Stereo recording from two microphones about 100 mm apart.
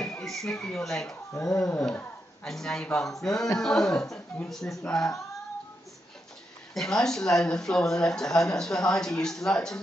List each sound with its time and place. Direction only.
0.0 s speech: 5° left (ahead or behind)
6.7 s speech: 5° left (ahead or behind)